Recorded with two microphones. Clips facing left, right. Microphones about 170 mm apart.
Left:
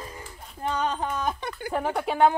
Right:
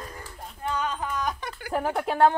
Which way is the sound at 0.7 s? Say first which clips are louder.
Left 2 dB; 30° left (ahead or behind).